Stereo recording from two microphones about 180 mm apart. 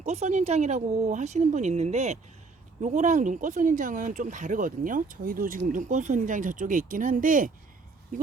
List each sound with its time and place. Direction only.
0.0 s speech: 40° right (ahead or behind)